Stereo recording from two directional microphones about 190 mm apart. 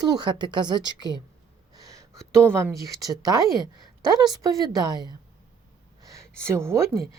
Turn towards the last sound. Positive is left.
turn(degrees=-15)  # may be behind; listen again after turning